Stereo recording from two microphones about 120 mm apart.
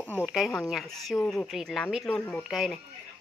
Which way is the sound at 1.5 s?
Centre (ahead or behind).